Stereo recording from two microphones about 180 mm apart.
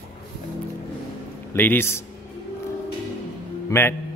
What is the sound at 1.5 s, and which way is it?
Speech, 10° left (ahead or behind).